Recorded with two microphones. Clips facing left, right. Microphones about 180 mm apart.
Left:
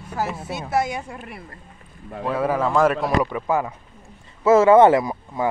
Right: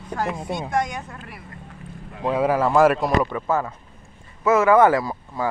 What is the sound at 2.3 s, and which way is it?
Speech, 10° right (ahead or behind).